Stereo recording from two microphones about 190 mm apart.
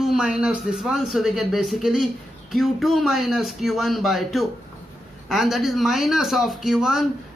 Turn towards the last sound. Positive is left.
turn(degrees=0)  # may be behind; listen again after turning